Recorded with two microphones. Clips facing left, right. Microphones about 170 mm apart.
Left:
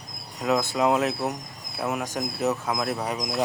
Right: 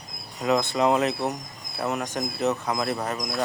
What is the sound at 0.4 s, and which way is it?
A man's voice, 5° left (ahead or behind).